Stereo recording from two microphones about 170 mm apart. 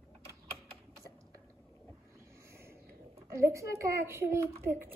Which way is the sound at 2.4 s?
15° right (ahead or behind).